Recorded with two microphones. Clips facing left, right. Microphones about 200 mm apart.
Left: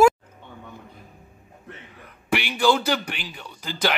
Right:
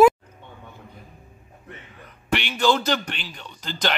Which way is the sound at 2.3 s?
10° left (ahead or behind).